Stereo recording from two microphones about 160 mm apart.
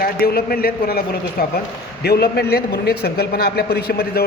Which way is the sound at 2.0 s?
90° left.